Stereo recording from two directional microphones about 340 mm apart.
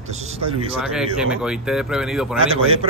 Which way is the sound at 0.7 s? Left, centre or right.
Centre.